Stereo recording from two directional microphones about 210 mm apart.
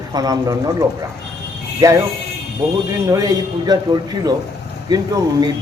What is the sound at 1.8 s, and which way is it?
Speech, 15° right (ahead or behind).